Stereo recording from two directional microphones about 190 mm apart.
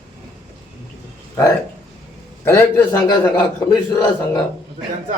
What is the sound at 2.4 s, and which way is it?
A man's voice, 15° left (ahead or behind).